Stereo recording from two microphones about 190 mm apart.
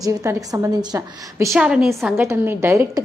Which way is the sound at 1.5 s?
5° right (ahead or behind).